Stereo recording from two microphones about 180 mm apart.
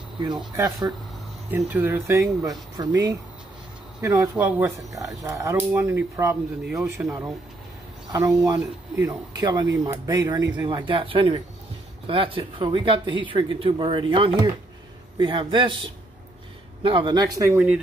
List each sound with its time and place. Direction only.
0.2 s speech: 25° right (ahead or behind)
6.6 s speech: 5° right (ahead or behind)
8.1 s speech: 20° right (ahead or behind)